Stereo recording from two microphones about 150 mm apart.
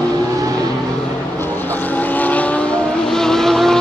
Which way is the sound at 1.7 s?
10° left (ahead or behind).